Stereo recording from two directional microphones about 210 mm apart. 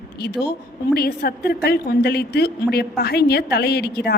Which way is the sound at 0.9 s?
45° left (ahead or behind).